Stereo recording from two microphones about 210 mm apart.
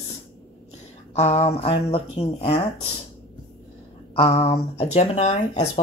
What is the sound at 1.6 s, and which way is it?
Speech, 25° left (ahead or behind).